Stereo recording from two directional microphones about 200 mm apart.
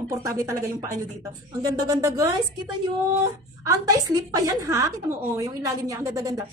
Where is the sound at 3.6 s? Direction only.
15° right (ahead or behind).